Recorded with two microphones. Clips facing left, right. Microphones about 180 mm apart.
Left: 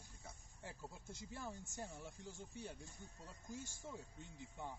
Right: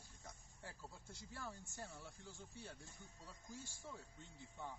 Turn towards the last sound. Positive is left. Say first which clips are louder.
# left 2 dB
turn(degrees=15)  # may be behind; listen again after turning